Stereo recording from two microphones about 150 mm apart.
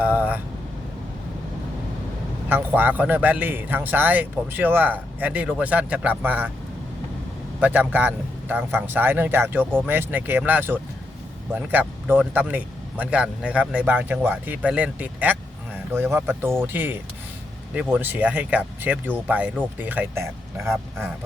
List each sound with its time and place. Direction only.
0.0 s speech: 10° right (ahead or behind)
2.5 s a man's voice: 10° right (ahead or behind)
7.6 s a man's voice: 10° right (ahead or behind)